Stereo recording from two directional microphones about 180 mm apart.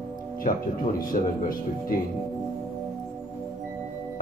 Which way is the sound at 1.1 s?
50° left (ahead or behind).